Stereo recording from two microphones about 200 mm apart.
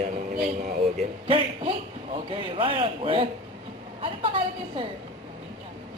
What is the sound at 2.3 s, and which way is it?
A woman's voice, 25° right (ahead or behind).